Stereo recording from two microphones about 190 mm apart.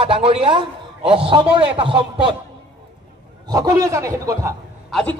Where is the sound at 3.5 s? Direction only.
20° right (ahead or behind).